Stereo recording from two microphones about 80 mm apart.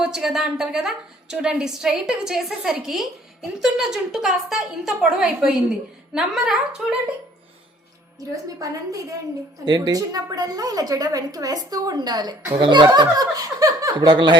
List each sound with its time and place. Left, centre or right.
0.0 s a woman's voice: centre
8.5 s a woman's voice: right
9.6 s a woman's voice: right